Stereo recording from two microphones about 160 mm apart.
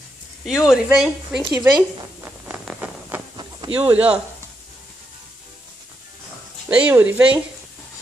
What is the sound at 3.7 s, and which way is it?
Speech, 10° right (ahead or behind).